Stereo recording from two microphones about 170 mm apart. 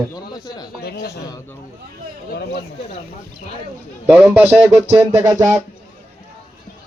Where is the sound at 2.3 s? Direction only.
65° left (ahead or behind).